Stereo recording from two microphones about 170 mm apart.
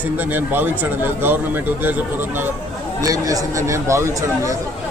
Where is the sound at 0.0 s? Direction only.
10° right (ahead or behind).